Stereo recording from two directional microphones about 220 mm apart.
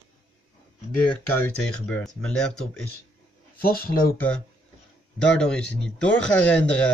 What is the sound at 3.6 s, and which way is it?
Speech, 40° left (ahead or behind).